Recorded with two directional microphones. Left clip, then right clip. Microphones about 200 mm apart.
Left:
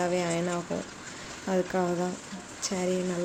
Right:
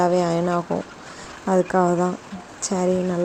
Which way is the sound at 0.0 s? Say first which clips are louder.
Right 9 dB; 30° right (ahead or behind).